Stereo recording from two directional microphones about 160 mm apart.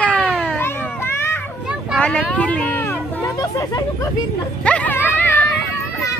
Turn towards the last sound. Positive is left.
turn(degrees=15)  # may be behind; listen again after turning